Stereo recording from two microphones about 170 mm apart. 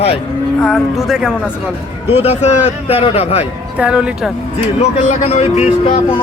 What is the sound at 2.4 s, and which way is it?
Speech, 35° left (ahead or behind).